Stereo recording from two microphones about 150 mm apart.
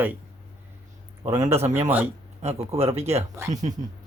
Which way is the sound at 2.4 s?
45° right (ahead or behind).